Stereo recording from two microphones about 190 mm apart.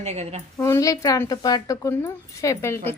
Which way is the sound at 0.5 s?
15° left (ahead or behind).